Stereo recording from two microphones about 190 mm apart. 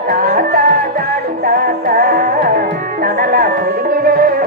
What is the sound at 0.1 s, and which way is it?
Music, 50° right (ahead or behind).